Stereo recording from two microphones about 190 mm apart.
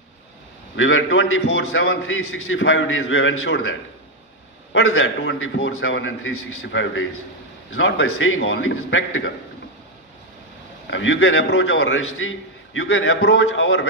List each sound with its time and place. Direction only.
0.7 s a man's voice: 90° left
4.7 s a man's voice: 90° left
10.9 s a man's voice: 90° left